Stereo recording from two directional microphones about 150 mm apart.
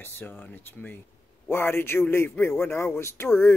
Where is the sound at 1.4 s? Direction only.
15° left (ahead or behind).